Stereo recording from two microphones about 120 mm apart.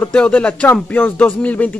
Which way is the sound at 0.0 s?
10° left (ahead or behind).